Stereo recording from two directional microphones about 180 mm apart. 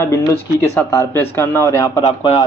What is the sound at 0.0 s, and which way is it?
A man's voice, 15° left (ahead or behind).